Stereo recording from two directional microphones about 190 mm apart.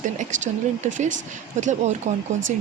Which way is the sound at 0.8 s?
40° right (ahead or behind).